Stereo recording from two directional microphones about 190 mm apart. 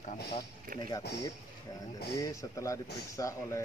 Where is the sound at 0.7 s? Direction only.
45° right (ahead or behind).